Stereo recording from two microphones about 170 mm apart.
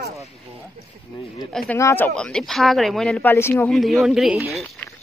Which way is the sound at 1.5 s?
5° left (ahead or behind).